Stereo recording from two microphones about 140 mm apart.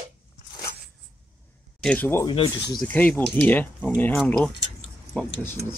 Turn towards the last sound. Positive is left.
turn(degrees=15)  # may be behind; listen again after turning